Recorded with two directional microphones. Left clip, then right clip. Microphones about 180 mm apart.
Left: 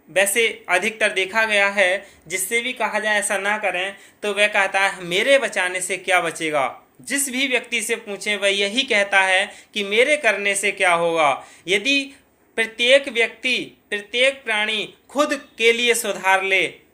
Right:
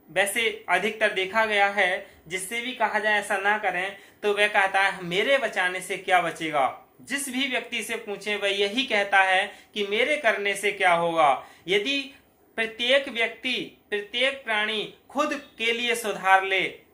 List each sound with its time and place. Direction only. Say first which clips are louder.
0.1 s speech: left 6 dB; 35° left (ahead or behind)